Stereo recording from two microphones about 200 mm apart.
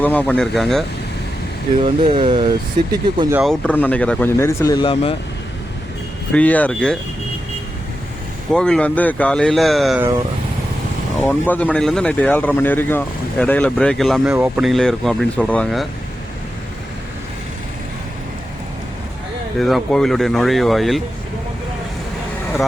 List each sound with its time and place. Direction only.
0.0 s speech: 10° left (ahead or behind)
1.8 s speech: 25° right (ahead or behind)
3.3 s speech: centre (ahead or behind); by 5.1 s 25° left (ahead or behind)
6.3 s speech: 5° left (ahead or behind)
8.5 s speech: 5° left (ahead or behind)
11.2 s speech: 10° left (ahead or behind)
19.5 s speech: centre (ahead or behind)